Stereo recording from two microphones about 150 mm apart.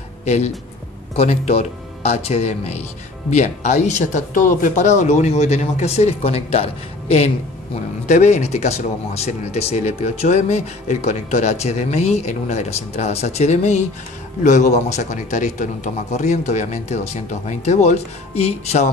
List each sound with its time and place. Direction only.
0.2 s speech: 50° left (ahead or behind)